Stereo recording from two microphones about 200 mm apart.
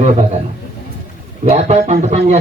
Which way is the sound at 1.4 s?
35° right (ahead or behind).